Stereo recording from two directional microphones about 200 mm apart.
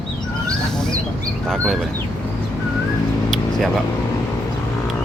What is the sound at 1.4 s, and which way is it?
Speech, centre (ahead or behind).